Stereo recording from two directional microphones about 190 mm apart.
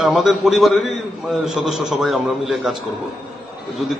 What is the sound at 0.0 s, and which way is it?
A man's voice, 5° right (ahead or behind).